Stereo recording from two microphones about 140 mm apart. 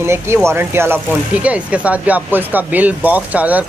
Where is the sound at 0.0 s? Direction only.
20° right (ahead or behind).